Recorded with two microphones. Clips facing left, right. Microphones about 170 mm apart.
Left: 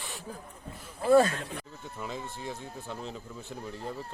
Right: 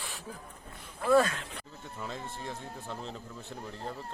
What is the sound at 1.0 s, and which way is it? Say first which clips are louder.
Speech: left 3 dB; 30° left (ahead or behind).